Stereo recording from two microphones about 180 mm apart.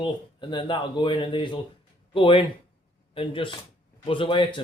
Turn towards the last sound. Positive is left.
turn(degrees=25)  # may be behind; listen again after turning